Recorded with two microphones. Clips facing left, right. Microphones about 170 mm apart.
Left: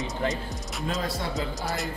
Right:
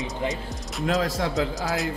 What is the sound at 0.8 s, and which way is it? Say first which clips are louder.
Speech: right 6 dB; 85° right.